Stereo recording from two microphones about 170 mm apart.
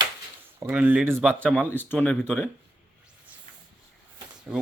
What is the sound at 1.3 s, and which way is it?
Speech, 5° left (ahead or behind).